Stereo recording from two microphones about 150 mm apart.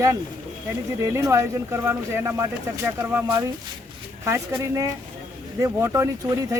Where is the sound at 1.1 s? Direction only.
20° right (ahead or behind).